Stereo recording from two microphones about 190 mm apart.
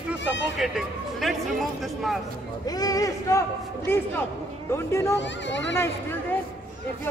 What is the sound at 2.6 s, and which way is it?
A man's voice, 20° left (ahead or behind).